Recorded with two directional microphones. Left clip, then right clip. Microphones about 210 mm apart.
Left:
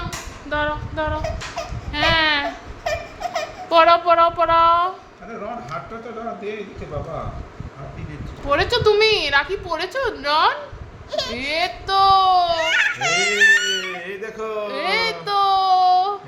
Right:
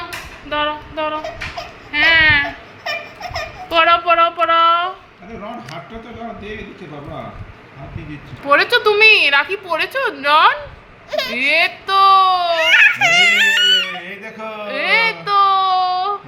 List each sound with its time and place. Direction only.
0.5 s child singing: 5° left (ahead or behind)
1.9 s speech: 10° left (ahead or behind)
2.8 s a sound: 30° left (ahead or behind)
3.7 s child singing: 15° left (ahead or behind)
8.4 s speech: centre (ahead or behind)
14.7 s a sound: centre (ahead or behind)